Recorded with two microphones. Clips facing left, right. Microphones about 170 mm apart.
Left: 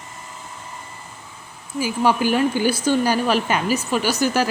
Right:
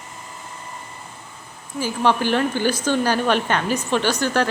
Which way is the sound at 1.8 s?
10° left (ahead or behind).